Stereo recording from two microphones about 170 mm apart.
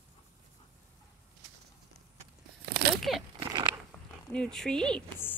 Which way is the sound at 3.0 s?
Centre (ahead or behind).